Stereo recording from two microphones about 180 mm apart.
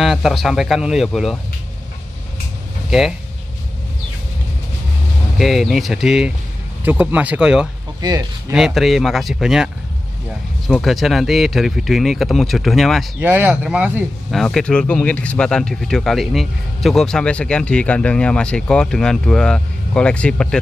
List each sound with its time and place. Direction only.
0.0 s speech: centre (ahead or behind)
2.9 s speech: 5° right (ahead or behind)
5.4 s speech: centre (ahead or behind)
8.0 s speech: 20° right (ahead or behind)
8.5 s speech: centre (ahead or behind)
10.7 s speech: centre (ahead or behind)
13.2 s speech: 10° right (ahead or behind); by 20.4 s 5° left (ahead or behind)